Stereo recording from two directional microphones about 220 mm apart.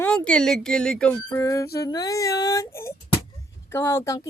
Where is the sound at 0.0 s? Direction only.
5° left (ahead or behind).